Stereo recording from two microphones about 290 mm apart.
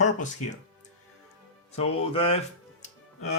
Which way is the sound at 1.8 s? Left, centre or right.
Centre.